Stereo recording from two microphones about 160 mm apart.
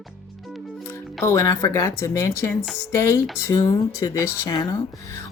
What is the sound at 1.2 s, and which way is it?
Speech, 20° left (ahead or behind).